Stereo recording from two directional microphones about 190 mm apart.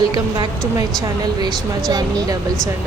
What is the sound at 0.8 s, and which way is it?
Speech, 20° right (ahead or behind).